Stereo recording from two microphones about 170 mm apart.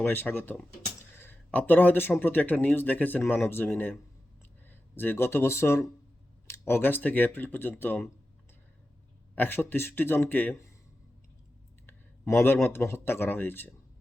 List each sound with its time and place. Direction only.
0.0 s speech: 10° left (ahead or behind)
4.9 s speech: 15° left (ahead or behind)
9.3 s speech: 10° left (ahead or behind)
11.9 s clicking: 15° left (ahead or behind)
12.6 s speech: 15° left (ahead or behind)